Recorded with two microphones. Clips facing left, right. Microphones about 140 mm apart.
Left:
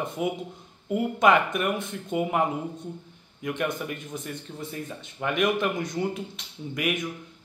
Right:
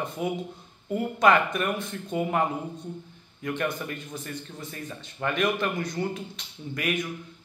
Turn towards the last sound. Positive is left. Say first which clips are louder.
# left 1 dB
turn(degrees=15)  # may be behind; listen again after turning